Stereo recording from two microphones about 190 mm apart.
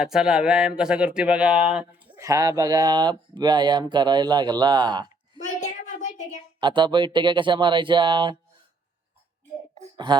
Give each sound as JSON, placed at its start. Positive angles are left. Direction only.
{"t": 0.0, "sound": "speech", "side_deg": -5}
{"t": 5.5, "sound": "child singing", "side_deg": 40}
{"t": 6.6, "sound": "speech", "side_deg": -25}